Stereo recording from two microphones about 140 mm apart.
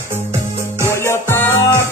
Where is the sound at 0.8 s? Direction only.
15° left (ahead or behind).